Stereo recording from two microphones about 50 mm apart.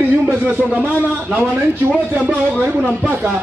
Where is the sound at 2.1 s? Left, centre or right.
Right.